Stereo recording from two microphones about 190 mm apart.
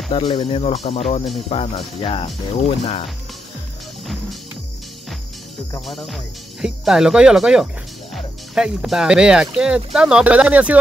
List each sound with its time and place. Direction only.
0.1 s speech: 25° left (ahead or behind)
5.9 s speech: centre (ahead or behind)